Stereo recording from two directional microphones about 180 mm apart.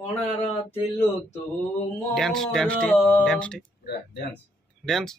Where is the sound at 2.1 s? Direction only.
Centre (ahead or behind).